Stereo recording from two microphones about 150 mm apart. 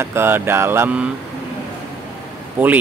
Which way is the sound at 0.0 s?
15° right (ahead or behind).